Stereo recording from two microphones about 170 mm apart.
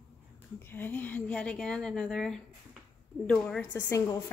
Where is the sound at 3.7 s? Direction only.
20° left (ahead or behind).